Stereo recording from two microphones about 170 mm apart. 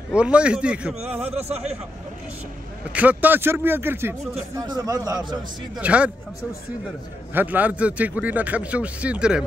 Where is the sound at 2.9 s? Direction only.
10° right (ahead or behind); by 5.5 s 25° right (ahead or behind).